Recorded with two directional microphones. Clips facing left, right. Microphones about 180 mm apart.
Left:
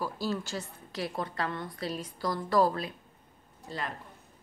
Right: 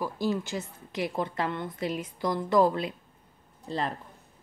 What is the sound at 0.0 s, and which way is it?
A woman's voice, 15° right (ahead or behind).